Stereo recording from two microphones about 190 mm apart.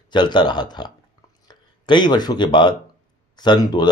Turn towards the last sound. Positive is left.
turn(degrees=20)  # may be behind; listen again after turning